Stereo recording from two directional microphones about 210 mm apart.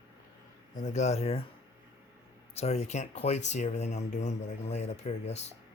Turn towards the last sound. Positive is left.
turn(degrees=30)  # may be behind; listen again after turning